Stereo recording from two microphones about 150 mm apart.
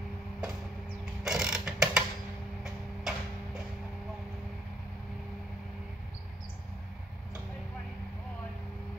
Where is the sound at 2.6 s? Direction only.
Centre (ahead or behind).